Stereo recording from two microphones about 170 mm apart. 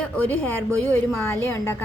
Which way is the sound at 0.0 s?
10° left (ahead or behind).